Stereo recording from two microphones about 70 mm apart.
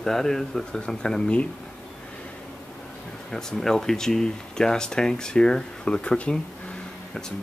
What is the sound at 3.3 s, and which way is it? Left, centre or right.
Speech, centre.